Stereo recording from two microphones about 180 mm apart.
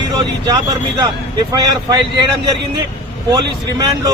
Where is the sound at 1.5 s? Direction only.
20° right (ahead or behind).